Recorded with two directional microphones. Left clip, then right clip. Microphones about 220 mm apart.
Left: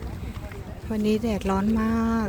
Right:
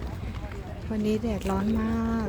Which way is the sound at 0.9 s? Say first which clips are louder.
Left 3 dB; 15° left (ahead or behind).